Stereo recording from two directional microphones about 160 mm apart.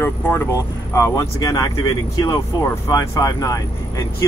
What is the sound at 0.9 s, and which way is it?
Speech, 20° left (ahead or behind).